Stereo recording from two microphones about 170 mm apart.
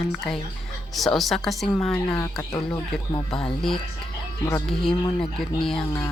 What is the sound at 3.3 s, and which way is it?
Speech, 5° left (ahead or behind).